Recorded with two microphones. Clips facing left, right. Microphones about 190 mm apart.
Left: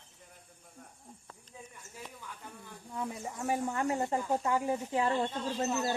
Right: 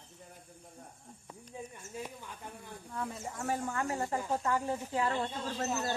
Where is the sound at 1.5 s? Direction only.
25° right (ahead or behind).